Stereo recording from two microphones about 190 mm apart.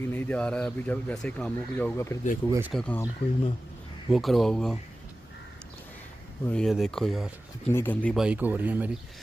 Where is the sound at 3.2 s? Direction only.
30° left (ahead or behind).